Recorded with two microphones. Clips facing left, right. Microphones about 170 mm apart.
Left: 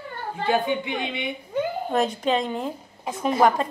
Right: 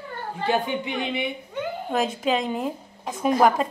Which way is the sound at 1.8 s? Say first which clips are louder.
Right 2 dB; centre (ahead or behind).